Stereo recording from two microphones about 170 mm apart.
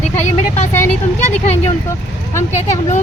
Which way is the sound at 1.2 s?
40° left (ahead or behind).